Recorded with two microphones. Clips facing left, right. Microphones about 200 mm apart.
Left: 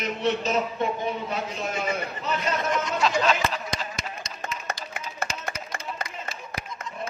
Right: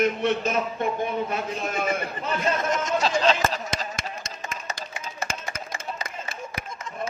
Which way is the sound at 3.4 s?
40° right (ahead or behind).